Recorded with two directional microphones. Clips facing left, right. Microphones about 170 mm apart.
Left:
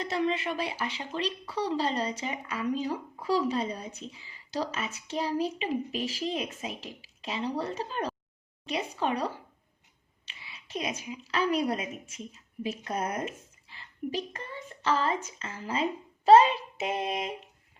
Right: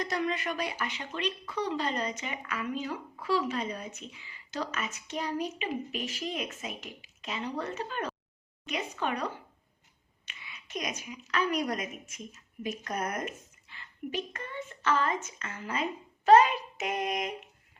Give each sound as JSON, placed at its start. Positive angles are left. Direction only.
{"t": 0.0, "sound": "a woman's voice", "side_deg": 25}